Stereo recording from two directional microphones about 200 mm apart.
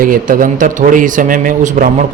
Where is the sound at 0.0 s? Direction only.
45° right (ahead or behind).